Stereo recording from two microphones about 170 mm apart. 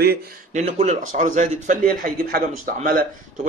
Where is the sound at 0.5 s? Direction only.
45° right (ahead or behind).